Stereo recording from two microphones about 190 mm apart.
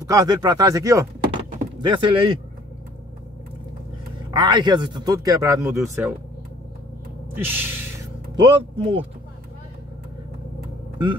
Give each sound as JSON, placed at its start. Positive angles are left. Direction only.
{"t": 0.0, "sound": "speech", "side_deg": -20}
{"t": 4.4, "sound": "speech", "side_deg": -25}
{"t": 7.3, "sound": "speech", "side_deg": -10}
{"t": 8.4, "sound": "speech", "side_deg": -30}